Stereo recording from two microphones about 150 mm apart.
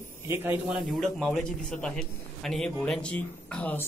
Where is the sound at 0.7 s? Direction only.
Centre (ahead or behind).